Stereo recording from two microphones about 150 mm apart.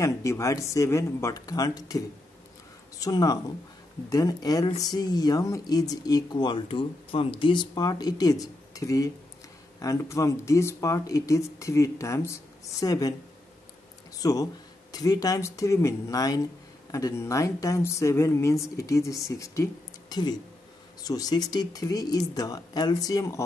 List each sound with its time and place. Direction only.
0.0 s speech: 20° left (ahead or behind)
14.1 s speech: 25° left (ahead or behind)